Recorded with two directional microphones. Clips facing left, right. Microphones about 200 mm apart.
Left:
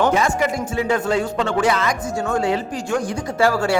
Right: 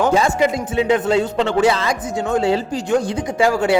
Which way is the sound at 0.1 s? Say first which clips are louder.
Right 3 dB; 25° right (ahead or behind).